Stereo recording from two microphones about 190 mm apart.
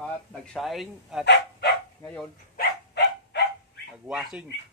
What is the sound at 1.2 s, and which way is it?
Speech, 65° left (ahead or behind).